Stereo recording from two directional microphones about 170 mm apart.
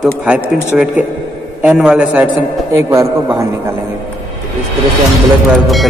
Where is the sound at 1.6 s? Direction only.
5° right (ahead or behind).